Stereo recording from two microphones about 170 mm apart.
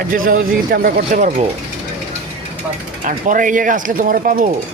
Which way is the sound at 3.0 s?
50° right (ahead or behind).